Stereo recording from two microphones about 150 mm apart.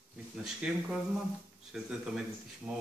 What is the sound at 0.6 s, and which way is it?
Speech, 5° right (ahead or behind).